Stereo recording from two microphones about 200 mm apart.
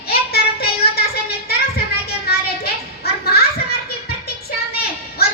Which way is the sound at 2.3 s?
50° left (ahead or behind).